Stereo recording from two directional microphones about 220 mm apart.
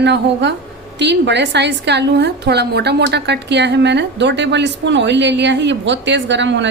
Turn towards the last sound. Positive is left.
turn(degrees=-55)  # may be behind; listen again after turning